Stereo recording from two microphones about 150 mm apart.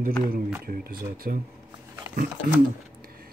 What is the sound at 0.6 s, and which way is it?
Speech, 85° right.